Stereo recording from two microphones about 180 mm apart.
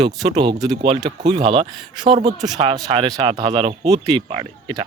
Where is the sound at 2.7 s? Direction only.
20° right (ahead or behind).